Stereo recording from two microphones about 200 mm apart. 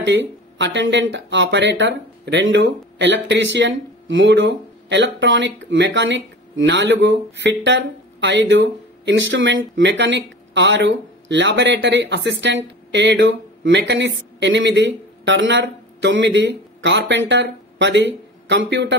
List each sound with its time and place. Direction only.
0.0 s speech: 65° right (ahead or behind)